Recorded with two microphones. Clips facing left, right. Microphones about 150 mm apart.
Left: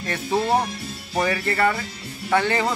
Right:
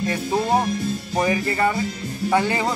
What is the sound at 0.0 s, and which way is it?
Speech, 15° right (ahead or behind).